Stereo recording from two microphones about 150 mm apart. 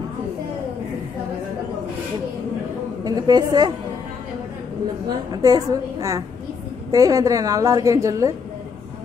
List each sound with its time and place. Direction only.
3.0 s a woman's voice: 25° right (ahead or behind)
5.3 s a woman's voice: 25° right (ahead or behind)